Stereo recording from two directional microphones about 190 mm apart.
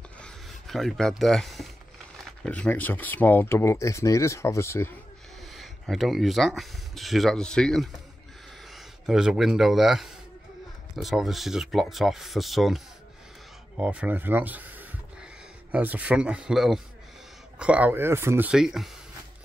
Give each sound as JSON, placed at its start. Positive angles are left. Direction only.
{"t": 0.2, "sound": "speech", "side_deg": 0}
{"t": 5.4, "sound": "speech", "side_deg": 0}